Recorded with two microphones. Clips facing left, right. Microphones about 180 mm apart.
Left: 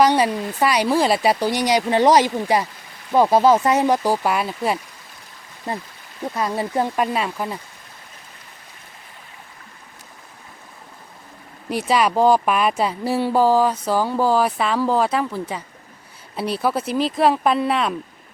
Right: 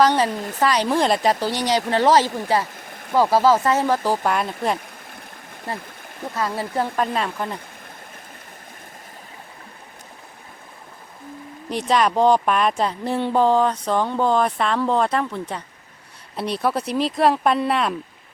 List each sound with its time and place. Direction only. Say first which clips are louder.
0.0 s speech: left 1 dB; 10° left (ahead or behind)
2.8 s a sound: right 5 dB; 55° right (ahead or behind)
3.2 s speech: left 2 dB; 20° left (ahead or behind)
5.7 s speech: left 3 dB; 20° left (ahead or behind)
11.7 s speech: left 1 dB; 5° left (ahead or behind)